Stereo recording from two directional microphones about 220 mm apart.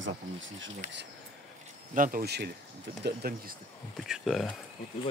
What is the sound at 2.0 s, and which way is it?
Speech, 40° right (ahead or behind).